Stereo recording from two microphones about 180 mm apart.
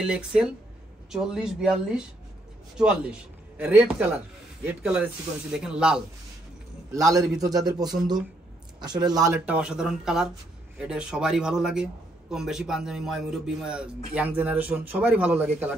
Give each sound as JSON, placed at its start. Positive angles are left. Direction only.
{"t": 0.0, "sound": "a man's voice", "side_deg": -5}
{"t": 6.9, "sound": "a man's voice", "side_deg": -20}
{"t": 9.0, "sound": "a man's voice", "side_deg": -20}
{"t": 9.5, "sound": "a man's voice", "side_deg": -5}